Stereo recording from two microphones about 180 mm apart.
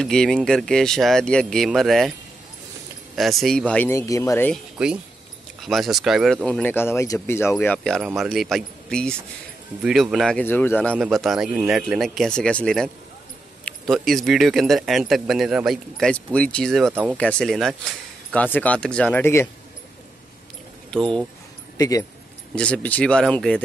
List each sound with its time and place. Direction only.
0.0 s speech: 5° left (ahead or behind)
3.2 s speech: centre (ahead or behind); by 4.5 s 20° left (ahead or behind)
5.6 s speech: centre (ahead or behind)
16.9 s speech: 10° right (ahead or behind)
17.2 s speech: 5° left (ahead or behind)
20.9 s speech: 5° left (ahead or behind)
21.7 s speech: 20° left (ahead or behind)
22.6 s speech: 10° left (ahead or behind)